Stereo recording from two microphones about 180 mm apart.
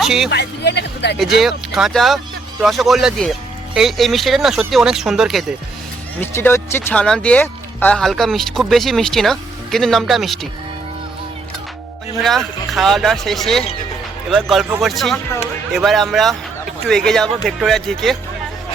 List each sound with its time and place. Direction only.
0.0 s speech: centre (ahead or behind)
0.3 s speech: 70° left (ahead or behind)
1.4 s speech: centre (ahead or behind)
6.1 s speech: 10° left (ahead or behind)
12.2 s speech: centre (ahead or behind)